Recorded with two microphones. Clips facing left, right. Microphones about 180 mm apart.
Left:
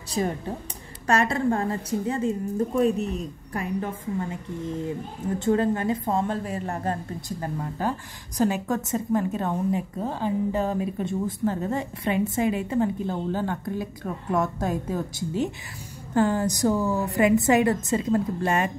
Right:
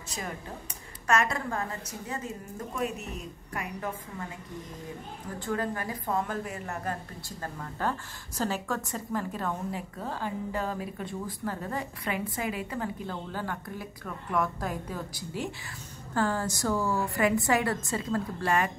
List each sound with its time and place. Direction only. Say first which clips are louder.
0.2 s a woman's voice: left 11 dB; 35° left (ahead or behind)
5.4 s a woman's voice: left 9 dB; 25° left (ahead or behind)